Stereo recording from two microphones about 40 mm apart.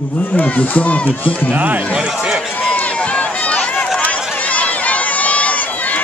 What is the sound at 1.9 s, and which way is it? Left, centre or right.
Speech, centre.